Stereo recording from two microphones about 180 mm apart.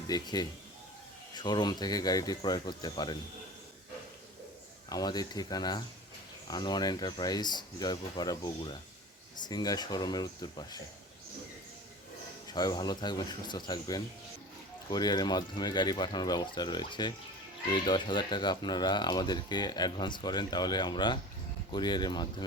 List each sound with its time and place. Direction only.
0.1 s speech: 20° left (ahead or behind)
4.9 s speech: 20° left (ahead or behind)
12.5 s speech: 25° left (ahead or behind)